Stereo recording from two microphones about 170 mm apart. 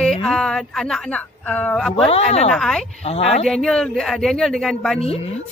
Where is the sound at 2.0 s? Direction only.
35° left (ahead or behind).